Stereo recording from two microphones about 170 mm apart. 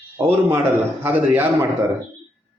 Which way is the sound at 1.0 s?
10° right (ahead or behind).